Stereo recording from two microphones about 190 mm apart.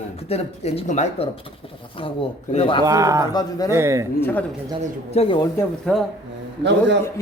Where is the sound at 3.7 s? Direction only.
15° right (ahead or behind).